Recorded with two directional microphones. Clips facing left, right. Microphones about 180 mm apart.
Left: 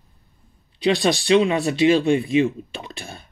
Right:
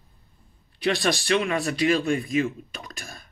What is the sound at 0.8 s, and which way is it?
Speech, 20° left (ahead or behind).